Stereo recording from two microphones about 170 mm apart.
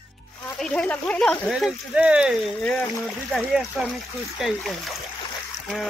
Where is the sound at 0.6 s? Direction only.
5° left (ahead or behind).